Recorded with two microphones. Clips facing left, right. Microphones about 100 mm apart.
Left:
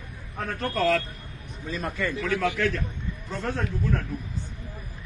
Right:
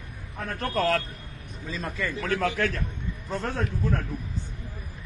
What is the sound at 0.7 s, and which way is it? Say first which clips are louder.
Speech: left 1 dB; 45° right (ahead or behind).